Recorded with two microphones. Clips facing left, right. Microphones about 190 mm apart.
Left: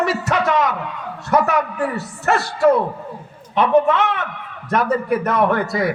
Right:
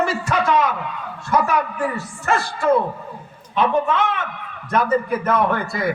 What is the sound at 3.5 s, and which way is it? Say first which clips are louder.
A man's voice: left 4 dB; 65° left (ahead or behind).